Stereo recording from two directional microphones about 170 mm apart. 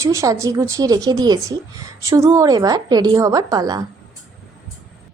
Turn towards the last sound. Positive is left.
turn(degrees=-20)  # may be behind; listen again after turning